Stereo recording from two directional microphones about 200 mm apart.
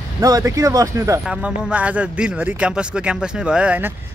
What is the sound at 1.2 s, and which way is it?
Speech, 5° right (ahead or behind).